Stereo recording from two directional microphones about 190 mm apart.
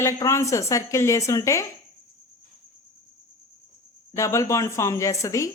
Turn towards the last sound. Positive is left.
turn(degrees=15)  # may be behind; listen again after turning